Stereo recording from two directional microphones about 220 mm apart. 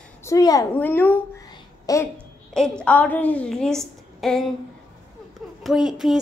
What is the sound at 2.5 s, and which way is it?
A woman's voice, 5° left (ahead or behind).